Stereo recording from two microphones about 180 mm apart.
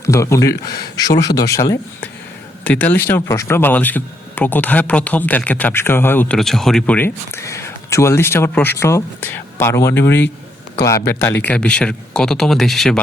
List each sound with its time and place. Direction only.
0.0 s speech: 15° left (ahead or behind); by 13.0 s centre (ahead or behind)